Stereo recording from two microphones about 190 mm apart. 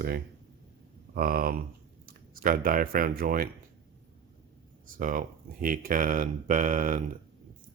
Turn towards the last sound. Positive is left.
turn(degrees=-40)  # may be behind; listen again after turning